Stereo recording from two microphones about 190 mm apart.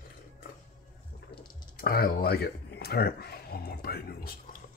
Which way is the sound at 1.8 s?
50° left (ahead or behind).